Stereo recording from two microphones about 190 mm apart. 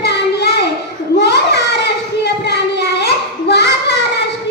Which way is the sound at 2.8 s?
60° left (ahead or behind).